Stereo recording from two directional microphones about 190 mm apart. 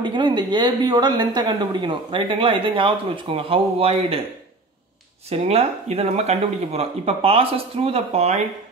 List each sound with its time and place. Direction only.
0.0 s a woman's voice: 25° right (ahead or behind)
5.3 s speech: 30° right (ahead or behind)